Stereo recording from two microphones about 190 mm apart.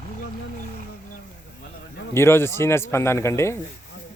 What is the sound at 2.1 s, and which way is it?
A man's voice, 15° left (ahead or behind).